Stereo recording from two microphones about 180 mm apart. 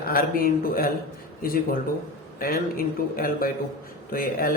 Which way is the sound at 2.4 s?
55° left (ahead or behind).